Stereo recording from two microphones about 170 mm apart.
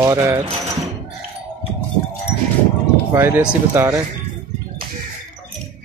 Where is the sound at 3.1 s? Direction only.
10° right (ahead or behind).